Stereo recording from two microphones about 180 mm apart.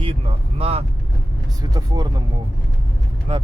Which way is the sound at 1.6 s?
20° right (ahead or behind).